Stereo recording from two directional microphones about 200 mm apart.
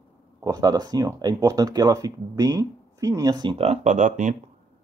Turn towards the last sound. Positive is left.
turn(degrees=-40)  # may be behind; listen again after turning